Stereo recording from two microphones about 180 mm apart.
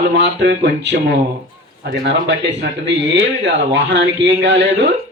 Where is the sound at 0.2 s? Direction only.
70° right (ahead or behind).